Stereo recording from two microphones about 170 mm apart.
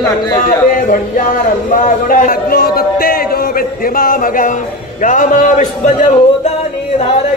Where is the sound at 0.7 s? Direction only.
55° left (ahead or behind).